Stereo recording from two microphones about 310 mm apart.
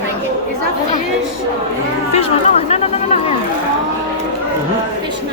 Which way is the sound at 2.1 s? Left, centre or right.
Centre.